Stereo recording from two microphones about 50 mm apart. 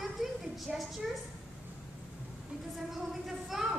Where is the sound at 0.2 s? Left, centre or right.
Centre.